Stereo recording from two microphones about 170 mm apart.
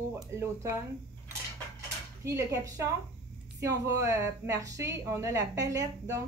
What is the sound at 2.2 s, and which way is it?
A woman's voice, 15° right (ahead or behind).